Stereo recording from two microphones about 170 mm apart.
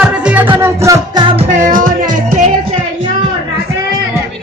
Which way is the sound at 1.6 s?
50° right (ahead or behind).